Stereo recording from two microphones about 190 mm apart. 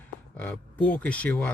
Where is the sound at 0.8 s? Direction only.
10° left (ahead or behind).